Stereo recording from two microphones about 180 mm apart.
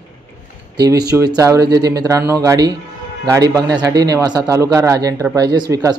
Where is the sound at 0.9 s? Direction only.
20° right (ahead or behind).